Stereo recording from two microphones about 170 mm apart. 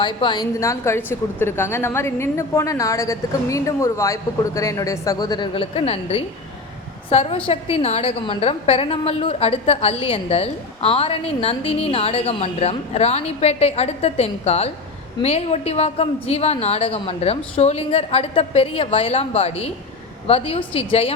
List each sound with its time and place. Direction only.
0.0 s a woman's voice: 25° left (ahead or behind)